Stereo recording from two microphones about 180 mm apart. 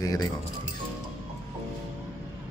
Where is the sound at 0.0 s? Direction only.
20° left (ahead or behind).